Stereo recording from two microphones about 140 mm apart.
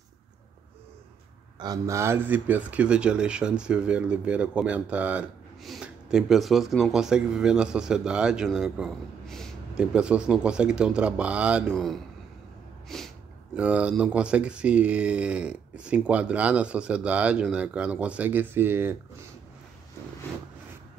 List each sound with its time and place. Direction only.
1.6 s speech: 25° right (ahead or behind); by 9.8 s 5° left (ahead or behind)
9.9 s speech: 5° right (ahead or behind)
12.8 s snort: centre (ahead or behind)
13.6 s speech: 10° right (ahead or behind)